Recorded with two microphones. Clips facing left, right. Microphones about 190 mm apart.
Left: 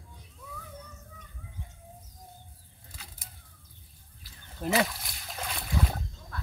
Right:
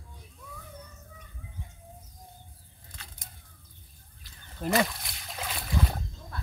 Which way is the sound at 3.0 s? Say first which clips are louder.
Even; 5° left (ahead or behind).